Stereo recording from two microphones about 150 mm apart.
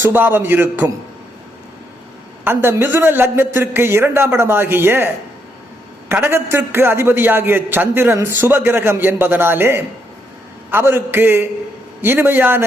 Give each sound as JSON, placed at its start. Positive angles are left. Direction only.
{"t": 0.0, "sound": "a man's voice", "side_deg": -15}
{"t": 2.4, "sound": "a man's voice", "side_deg": -15}